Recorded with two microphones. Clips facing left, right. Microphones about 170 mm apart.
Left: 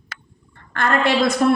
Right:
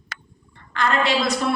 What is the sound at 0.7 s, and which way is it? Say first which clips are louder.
Speech: left 2 dB; 50° left (ahead or behind).